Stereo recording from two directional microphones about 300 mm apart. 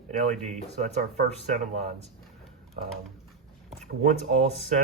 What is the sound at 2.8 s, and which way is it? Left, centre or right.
Speech, right.